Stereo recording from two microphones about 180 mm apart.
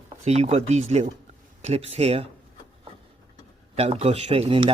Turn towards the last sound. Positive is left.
turn(degrees=-30)  # may be behind; listen again after turning